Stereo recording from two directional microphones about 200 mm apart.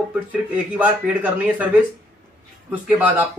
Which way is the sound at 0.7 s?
5° right (ahead or behind).